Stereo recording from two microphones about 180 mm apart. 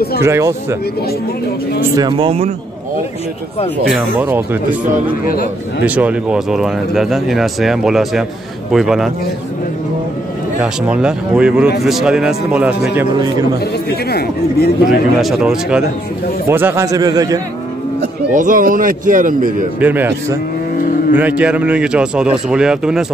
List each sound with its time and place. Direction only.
0.2 s speech: 15° right (ahead or behind)
2.0 s a man's voice: 25° right (ahead or behind)
3.9 s speech: 10° right (ahead or behind)
5.2 s a man's voice: 55° left (ahead or behind)
5.9 s speech: 10° right (ahead or behind)
10.6 s speech: 5° right (ahead or behind)
14.1 s a man's voice: 60° left (ahead or behind)
14.9 s a man's voice: centre (ahead or behind); by 17.4 s 20° right (ahead or behind)
18.3 s speech: 45° right (ahead or behind)
19.8 s speech: 10° right (ahead or behind)
21.2 s speech: 10° right (ahead or behind)